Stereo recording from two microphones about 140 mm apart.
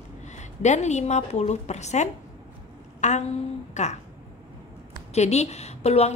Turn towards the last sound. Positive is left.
turn(degrees=50)  # may be behind; listen again after turning